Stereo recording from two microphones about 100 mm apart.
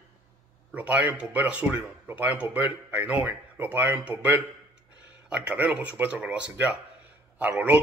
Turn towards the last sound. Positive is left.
turn(degrees=-15)  # may be behind; listen again after turning